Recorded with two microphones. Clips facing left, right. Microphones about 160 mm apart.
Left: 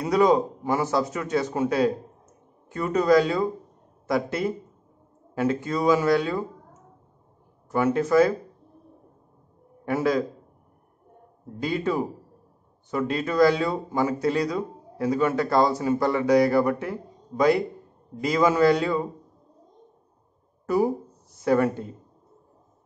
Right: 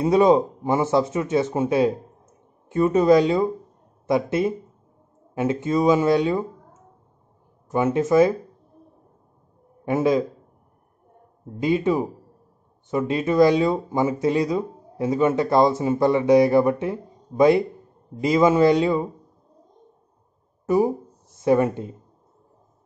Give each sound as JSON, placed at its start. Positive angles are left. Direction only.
{"t": 0.0, "sound": "a man's voice", "side_deg": -25}
{"t": 7.7, "sound": "a man's voice", "side_deg": -20}
{"t": 9.8, "sound": "a man's voice", "side_deg": -20}
{"t": 11.6, "sound": "a man's voice", "side_deg": -20}
{"t": 20.6, "sound": "speech", "side_deg": -20}